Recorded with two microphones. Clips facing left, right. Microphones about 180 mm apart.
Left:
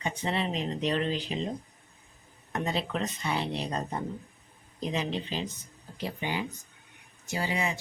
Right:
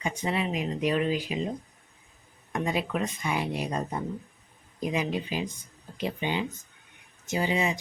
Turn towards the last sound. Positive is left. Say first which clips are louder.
# right 4 dB
turn(degrees=-20)  # may be behind; listen again after turning